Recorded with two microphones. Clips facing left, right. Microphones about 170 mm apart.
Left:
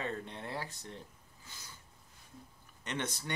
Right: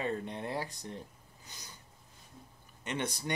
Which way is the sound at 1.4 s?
20° right (ahead or behind).